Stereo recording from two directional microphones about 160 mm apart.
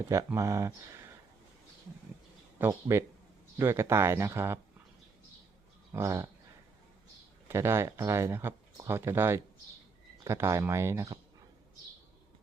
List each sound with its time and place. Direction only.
0.1 s speech: 20° right (ahead or behind)
2.6 s speech: 15° right (ahead or behind)
5.9 s speech: 15° right (ahead or behind)
7.4 s speech: 15° right (ahead or behind)